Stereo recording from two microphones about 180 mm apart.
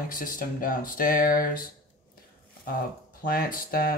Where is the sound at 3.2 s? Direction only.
50° left (ahead or behind).